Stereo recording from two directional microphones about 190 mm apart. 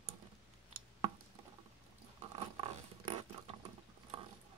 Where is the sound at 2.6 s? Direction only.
30° right (ahead or behind).